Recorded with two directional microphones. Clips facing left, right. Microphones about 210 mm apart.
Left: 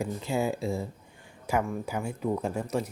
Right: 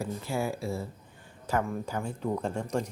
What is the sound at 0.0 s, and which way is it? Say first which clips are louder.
Speech: left 3 dB; 20° left (ahead or behind).